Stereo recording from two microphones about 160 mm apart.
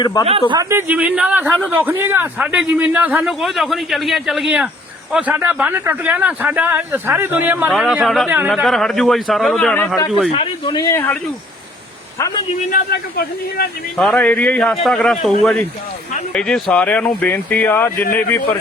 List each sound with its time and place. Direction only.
0.0 s speech: 25° left (ahead or behind)
0.5 s a man's voice: 20° right (ahead or behind)
1.5 s a man's voice: 5° left (ahead or behind)
1.8 s a man's voice: 15° right (ahead or behind); by 10.0 s 5° left (ahead or behind)
10.3 s speech: 35° left (ahead or behind)
10.8 s speech: 20° left (ahead or behind)
12.7 s speech: 75° left (ahead or behind)
13.9 s a man's voice: 5° left (ahead or behind)